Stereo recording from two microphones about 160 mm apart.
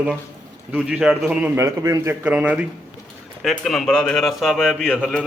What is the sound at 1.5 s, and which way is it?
A man's voice, 20° right (ahead or behind).